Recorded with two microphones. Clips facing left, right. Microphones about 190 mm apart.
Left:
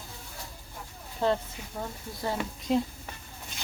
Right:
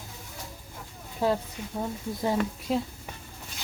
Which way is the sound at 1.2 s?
10° right (ahead or behind).